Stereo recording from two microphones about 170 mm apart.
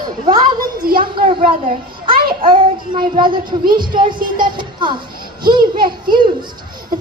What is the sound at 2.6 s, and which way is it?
Speech, 30° right (ahead or behind).